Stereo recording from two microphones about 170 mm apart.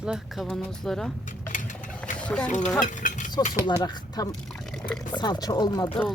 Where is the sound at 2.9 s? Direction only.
50° left (ahead or behind).